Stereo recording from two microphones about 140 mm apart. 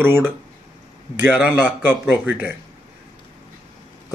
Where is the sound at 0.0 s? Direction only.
15° right (ahead or behind).